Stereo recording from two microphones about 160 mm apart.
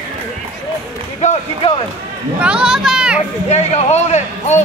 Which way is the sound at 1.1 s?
45° left (ahead or behind).